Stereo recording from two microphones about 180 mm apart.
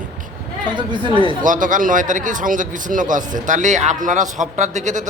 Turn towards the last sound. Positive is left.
turn(degrees=-40)  # may be behind; listen again after turning